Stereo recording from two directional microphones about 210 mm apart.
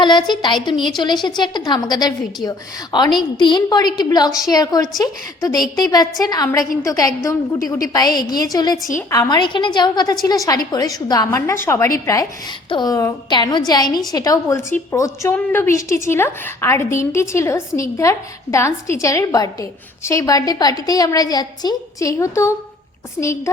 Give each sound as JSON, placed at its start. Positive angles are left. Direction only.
{"t": 0.0, "sound": "a woman's voice", "side_deg": 20}